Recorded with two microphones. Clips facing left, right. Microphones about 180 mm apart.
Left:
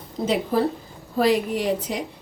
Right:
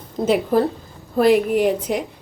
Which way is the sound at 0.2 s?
50° right (ahead or behind).